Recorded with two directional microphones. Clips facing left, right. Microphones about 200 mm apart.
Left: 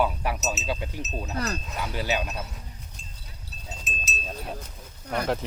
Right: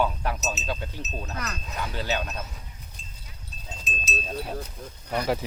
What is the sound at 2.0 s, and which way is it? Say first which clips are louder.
Speech: left 1 dB; 15° left (ahead or behind).